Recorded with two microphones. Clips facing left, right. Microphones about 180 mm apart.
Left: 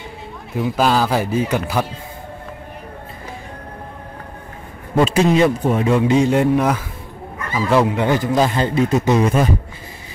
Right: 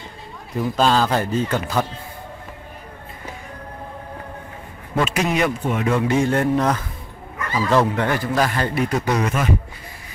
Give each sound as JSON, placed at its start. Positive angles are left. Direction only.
{"t": 0.6, "sound": "a man's voice", "side_deg": 10}
{"t": 4.9, "sound": "speech", "side_deg": 30}
{"t": 5.9, "sound": "a man's voice", "side_deg": 20}